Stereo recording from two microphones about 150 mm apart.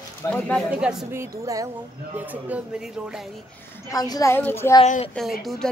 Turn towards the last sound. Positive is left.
turn(degrees=0)  # may be behind; listen again after turning